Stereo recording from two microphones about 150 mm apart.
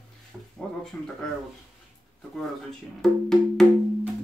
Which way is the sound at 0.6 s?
5° left (ahead or behind).